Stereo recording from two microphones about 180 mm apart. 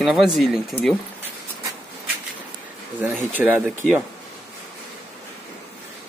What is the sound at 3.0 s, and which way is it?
Speech, 10° right (ahead or behind).